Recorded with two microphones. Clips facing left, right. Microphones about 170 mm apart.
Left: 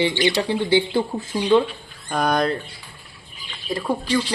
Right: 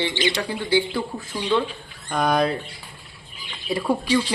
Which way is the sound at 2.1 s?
Centre (ahead or behind).